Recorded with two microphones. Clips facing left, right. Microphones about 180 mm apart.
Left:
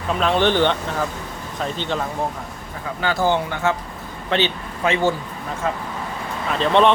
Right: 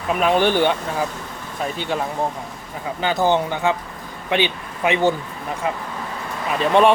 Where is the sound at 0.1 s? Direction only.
10° right (ahead or behind).